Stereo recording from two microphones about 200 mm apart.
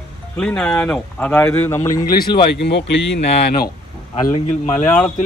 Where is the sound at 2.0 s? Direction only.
50° left (ahead or behind).